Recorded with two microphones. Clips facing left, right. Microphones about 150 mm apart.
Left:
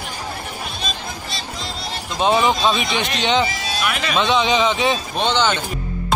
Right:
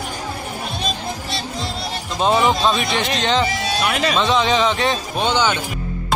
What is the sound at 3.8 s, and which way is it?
Speech, 30° right (ahead or behind).